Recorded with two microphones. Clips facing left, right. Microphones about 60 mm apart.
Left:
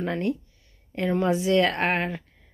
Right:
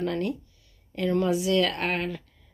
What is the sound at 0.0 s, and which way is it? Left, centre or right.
Speech, left.